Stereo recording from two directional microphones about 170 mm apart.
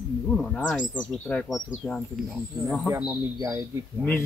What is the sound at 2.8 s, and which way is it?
Speech, 10° right (ahead or behind).